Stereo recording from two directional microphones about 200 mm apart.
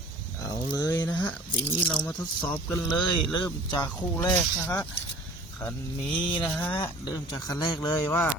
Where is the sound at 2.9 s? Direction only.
20° left (ahead or behind).